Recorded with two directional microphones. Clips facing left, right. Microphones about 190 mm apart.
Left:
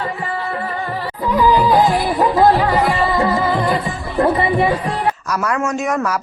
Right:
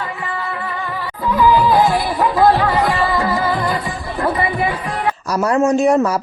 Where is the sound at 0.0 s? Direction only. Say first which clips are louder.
Left 2 dB; 35° left (ahead or behind).